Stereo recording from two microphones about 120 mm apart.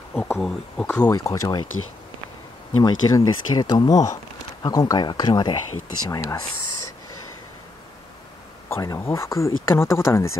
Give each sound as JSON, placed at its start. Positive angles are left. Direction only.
{"t": 0.1, "sound": "speech", "side_deg": 15}
{"t": 0.4, "sound": "speech", "side_deg": 5}
{"t": 1.1, "sound": "speech", "side_deg": 30}
{"t": 2.8, "sound": "speech", "side_deg": 35}
{"t": 8.6, "sound": "speech", "side_deg": 25}